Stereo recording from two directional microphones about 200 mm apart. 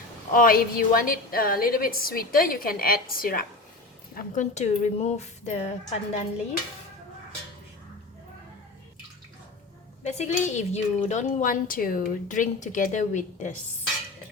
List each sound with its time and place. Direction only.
0.3 s a woman's voice: 45° left (ahead or behind)
10.0 s a woman's voice: 35° left (ahead or behind)